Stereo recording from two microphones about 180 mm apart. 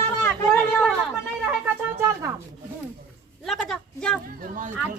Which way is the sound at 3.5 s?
Centre (ahead or behind).